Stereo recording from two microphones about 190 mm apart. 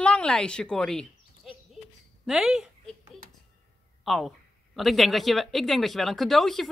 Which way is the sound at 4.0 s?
Centre (ahead or behind).